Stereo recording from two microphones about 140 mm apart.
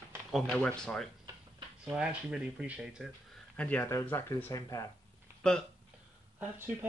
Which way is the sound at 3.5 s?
10° left (ahead or behind).